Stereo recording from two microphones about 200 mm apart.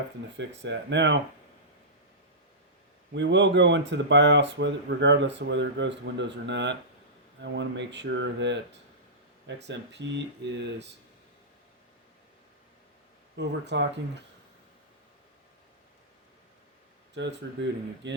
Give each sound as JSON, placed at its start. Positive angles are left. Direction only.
{"t": 0.3, "sound": "speech", "side_deg": -60}
{"t": 3.1, "sound": "speech", "side_deg": -60}
{"t": 9.6, "sound": "speech", "side_deg": -60}
{"t": 13.3, "sound": "speech", "side_deg": -60}
{"t": 17.2, "sound": "speech", "side_deg": -60}